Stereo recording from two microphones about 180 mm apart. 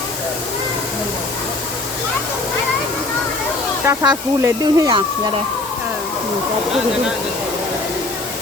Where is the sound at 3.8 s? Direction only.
15° right (ahead or behind).